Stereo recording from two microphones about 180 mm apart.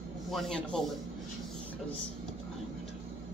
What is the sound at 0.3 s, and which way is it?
Speech, centre (ahead or behind).